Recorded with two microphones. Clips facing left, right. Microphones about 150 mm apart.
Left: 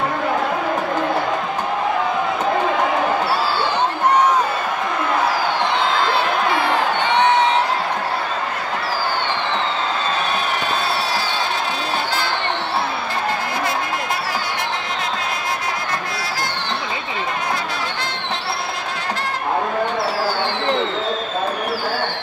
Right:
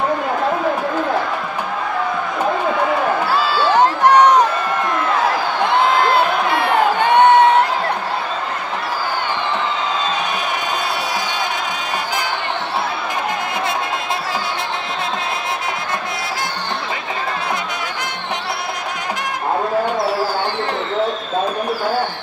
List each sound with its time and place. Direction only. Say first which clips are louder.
3.3 s crowd: right 5 dB; 90° right
6.1 s basketball bounce: right 2 dB; 55° right (ahead or behind)